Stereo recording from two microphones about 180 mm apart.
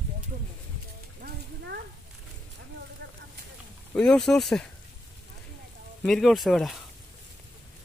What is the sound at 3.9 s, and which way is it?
Speech, 5° left (ahead or behind).